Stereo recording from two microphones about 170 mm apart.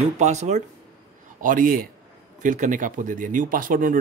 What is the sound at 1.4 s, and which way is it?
Speech, 55° right (ahead or behind).